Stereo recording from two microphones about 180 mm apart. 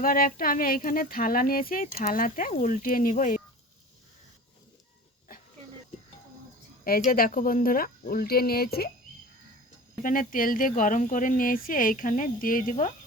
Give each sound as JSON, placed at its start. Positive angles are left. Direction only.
{"t": 0.0, "sound": "speech", "side_deg": 50}
{"t": 6.8, "sound": "speech", "side_deg": 55}
{"t": 10.0, "sound": "speech", "side_deg": 50}